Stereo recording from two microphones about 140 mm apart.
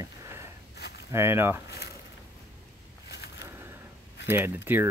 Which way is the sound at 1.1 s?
20° right (ahead or behind).